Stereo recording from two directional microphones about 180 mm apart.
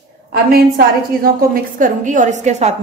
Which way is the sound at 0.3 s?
60° right (ahead or behind).